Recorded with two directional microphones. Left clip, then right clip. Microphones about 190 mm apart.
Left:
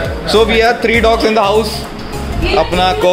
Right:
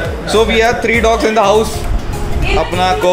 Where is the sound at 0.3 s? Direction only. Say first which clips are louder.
Left 1 dB; 10° left (ahead or behind).